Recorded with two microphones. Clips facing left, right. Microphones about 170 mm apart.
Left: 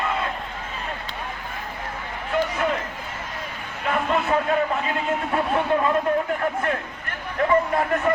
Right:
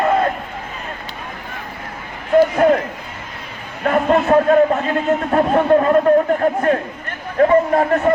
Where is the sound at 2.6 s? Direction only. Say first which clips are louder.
Right 11 dB; 45° right (ahead or behind).